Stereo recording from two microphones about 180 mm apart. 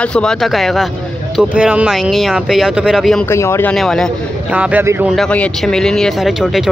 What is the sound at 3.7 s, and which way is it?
Speech, centre (ahead or behind).